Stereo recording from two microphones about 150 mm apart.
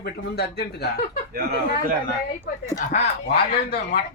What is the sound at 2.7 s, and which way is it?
Speech, 50° left (ahead or behind).